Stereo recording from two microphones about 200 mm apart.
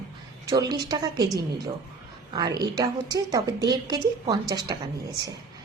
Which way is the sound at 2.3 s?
20° right (ahead or behind).